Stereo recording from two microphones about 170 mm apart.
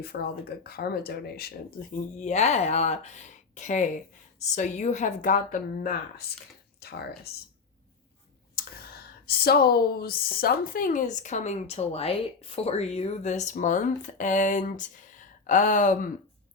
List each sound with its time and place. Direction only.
0.0 s speech: 65° left (ahead or behind)
2.0 s speech: 45° left (ahead or behind)
6.7 s speech: 70° left (ahead or behind)
8.5 s speech: 65° left (ahead or behind); by 16.0 s 50° left (ahead or behind)